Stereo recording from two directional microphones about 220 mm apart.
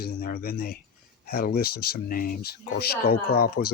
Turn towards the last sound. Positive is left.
turn(degrees=45)  # may be behind; listen again after turning